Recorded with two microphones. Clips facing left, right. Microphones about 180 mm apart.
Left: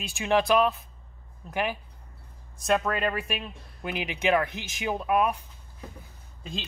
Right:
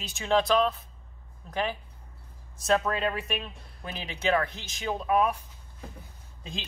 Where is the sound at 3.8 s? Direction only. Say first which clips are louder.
Left 3 dB; 15° left (ahead or behind).